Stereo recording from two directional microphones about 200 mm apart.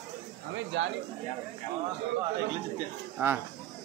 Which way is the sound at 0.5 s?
70° right (ahead or behind).